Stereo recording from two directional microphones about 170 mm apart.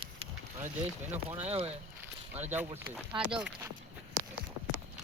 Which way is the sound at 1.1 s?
10° right (ahead or behind).